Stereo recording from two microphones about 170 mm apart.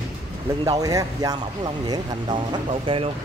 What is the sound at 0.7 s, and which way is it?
Speech, 20° right (ahead or behind).